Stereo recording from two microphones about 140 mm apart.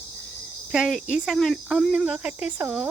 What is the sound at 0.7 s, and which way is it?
Speech, 5° right (ahead or behind).